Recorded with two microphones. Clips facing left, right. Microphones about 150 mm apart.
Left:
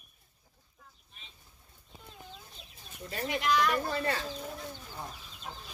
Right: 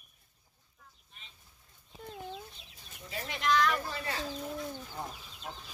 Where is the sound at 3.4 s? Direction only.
10° left (ahead or behind).